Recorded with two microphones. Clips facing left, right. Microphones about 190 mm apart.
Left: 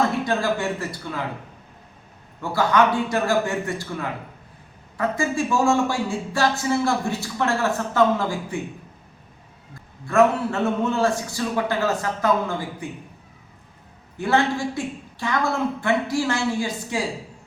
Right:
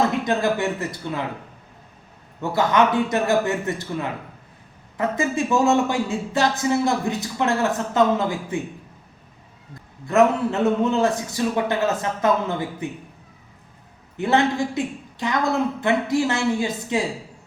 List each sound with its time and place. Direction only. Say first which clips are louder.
0.3 s speech: right 2 dB; 20° right (ahead or behind)
2.4 s speech: right 1 dB; 20° right (ahead or behind)
10.1 s speech: right 1 dB; 20° right (ahead or behind)
14.2 s a woman's voice: right 2 dB; 20° right (ahead or behind)